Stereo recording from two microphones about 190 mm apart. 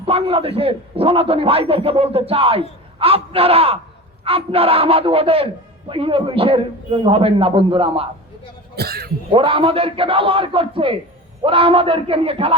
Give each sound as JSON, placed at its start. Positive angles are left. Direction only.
{"t": 0.0, "sound": "a man's voice", "side_deg": -30}
{"t": 8.7, "sound": "speech", "side_deg": -55}
{"t": 9.3, "sound": "a man's voice", "side_deg": -30}